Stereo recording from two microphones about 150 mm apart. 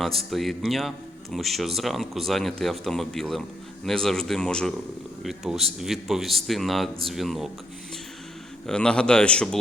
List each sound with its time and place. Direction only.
0.0 s a man's voice: centre (ahead or behind)
8.6 s a man's voice: 5° left (ahead or behind)